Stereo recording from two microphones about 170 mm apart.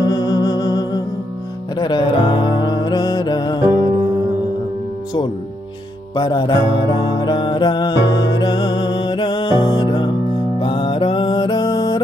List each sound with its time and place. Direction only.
0.0 s music: 25° left (ahead or behind)
6.1 s music: 25° left (ahead or behind)